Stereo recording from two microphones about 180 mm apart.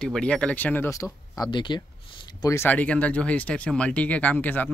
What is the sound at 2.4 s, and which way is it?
Speech, 15° left (ahead or behind).